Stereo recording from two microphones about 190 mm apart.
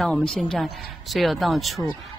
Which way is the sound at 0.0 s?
Centre (ahead or behind).